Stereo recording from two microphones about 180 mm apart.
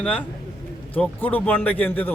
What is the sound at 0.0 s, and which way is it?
A man's voice, 5° left (ahead or behind).